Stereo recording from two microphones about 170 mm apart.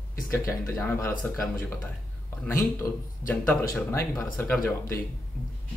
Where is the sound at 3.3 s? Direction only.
10° left (ahead or behind).